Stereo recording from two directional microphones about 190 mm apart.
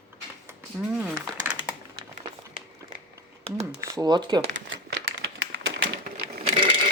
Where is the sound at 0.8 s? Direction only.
Centre (ahead or behind).